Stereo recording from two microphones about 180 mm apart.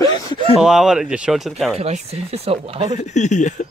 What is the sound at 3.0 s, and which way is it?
Speech, 40° left (ahead or behind).